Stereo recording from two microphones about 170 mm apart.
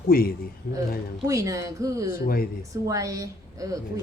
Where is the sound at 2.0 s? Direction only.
60° left (ahead or behind).